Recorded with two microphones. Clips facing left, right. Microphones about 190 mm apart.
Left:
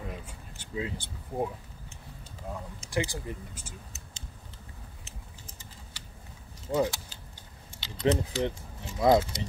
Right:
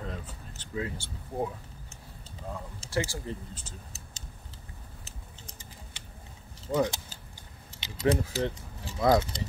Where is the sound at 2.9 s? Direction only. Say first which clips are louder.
Even; 15° left (ahead or behind).